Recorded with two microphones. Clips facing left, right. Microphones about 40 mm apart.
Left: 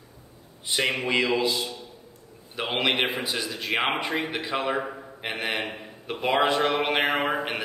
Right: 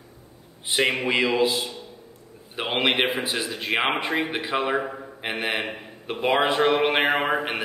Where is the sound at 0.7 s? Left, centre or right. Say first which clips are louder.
Right 3 dB; right.